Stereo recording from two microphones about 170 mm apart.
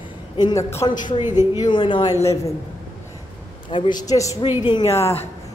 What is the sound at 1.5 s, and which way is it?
Speech, 25° left (ahead or behind).